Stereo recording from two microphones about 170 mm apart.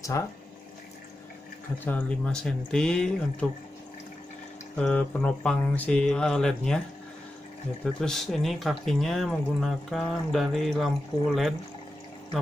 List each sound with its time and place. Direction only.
0.1 s speech: 20° left (ahead or behind)
1.9 s speech: 10° left (ahead or behind)
4.7 s speech: 5° left (ahead or behind)
7.8 s speech: 5° left (ahead or behind)